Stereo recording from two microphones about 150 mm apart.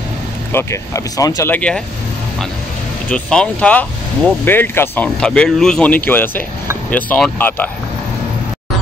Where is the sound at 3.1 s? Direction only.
5° left (ahead or behind).